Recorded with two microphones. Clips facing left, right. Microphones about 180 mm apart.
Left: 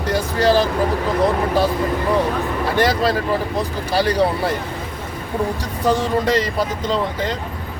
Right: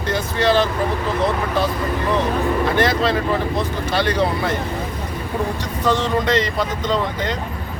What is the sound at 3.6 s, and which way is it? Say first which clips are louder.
Speech: left 1 dB; 35° left (ahead or behind).